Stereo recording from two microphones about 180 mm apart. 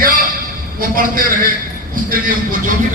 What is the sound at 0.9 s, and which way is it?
A man's voice, 50° right (ahead or behind).